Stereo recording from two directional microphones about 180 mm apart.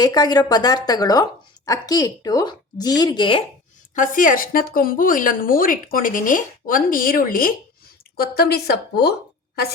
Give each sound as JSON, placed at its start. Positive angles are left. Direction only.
{"t": 0.0, "sound": "speech", "side_deg": 20}
{"t": 3.9, "sound": "a woman's voice", "side_deg": 45}
{"t": 8.4, "sound": "a woman's voice", "side_deg": 60}